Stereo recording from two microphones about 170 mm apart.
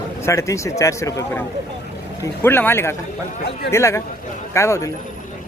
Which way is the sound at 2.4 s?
15° left (ahead or behind).